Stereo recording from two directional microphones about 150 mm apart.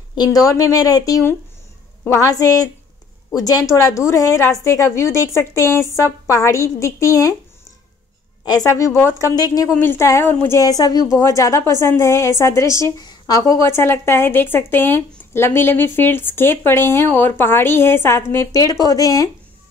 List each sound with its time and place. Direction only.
0.1 s a woman's voice: 25° left (ahead or behind)
8.5 s a woman's voice: 20° left (ahead or behind)